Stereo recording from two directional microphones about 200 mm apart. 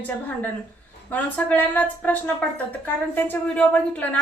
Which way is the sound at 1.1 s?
10° left (ahead or behind).